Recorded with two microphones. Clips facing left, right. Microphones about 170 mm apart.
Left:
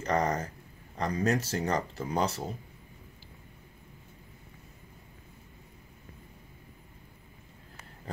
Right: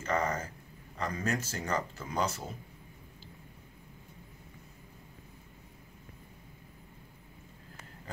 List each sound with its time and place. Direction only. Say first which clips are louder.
0.0 s speech: left 3 dB; 35° left (ahead or behind)